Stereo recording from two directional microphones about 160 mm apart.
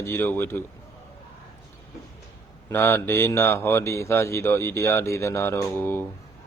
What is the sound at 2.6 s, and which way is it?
Speech, 15° left (ahead or behind).